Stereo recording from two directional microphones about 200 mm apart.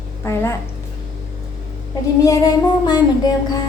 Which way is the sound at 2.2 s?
20° left (ahead or behind).